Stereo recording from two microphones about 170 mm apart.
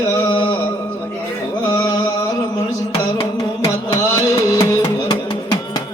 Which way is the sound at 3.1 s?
30° left (ahead or behind).